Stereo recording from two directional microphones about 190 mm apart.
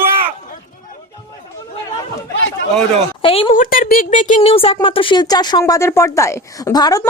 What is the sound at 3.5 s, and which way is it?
Speech, 45° left (ahead or behind).